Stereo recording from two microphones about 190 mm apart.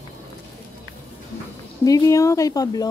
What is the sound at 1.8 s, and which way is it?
Speech, 20° left (ahead or behind).